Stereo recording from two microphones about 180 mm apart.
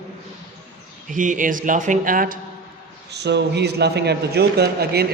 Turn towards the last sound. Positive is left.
turn(degrees=-60)  # may be behind; listen again after turning